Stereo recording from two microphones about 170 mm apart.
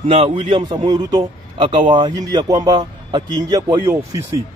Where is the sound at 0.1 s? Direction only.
35° right (ahead or behind).